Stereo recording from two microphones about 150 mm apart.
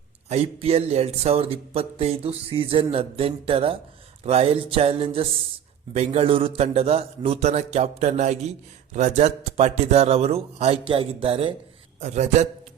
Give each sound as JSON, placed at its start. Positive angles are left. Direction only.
{"t": 0.3, "sound": "a man's voice", "side_deg": -45}
{"t": 11.9, "sound": "a man's voice", "side_deg": -50}